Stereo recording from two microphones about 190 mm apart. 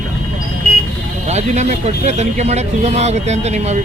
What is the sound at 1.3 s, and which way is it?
Speech, 35° right (ahead or behind).